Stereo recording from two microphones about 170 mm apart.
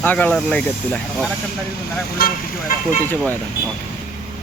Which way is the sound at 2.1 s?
60° left (ahead or behind).